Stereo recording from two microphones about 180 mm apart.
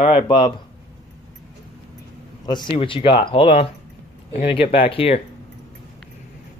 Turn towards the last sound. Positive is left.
turn(degrees=35)  # may be behind; listen again after turning